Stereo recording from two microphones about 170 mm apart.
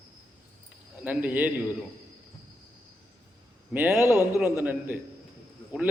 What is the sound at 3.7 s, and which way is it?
Speech, 10° right (ahead or behind).